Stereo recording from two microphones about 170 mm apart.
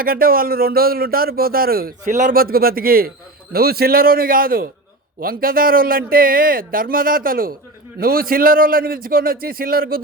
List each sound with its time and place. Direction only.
0.0 s speech: 60° right (ahead or behind)